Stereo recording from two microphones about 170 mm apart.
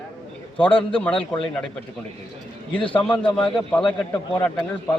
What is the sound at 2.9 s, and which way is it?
A man's voice, 10° left (ahead or behind).